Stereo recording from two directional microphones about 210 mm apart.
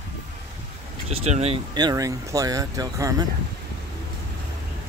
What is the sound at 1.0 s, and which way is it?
Speech, 30° right (ahead or behind).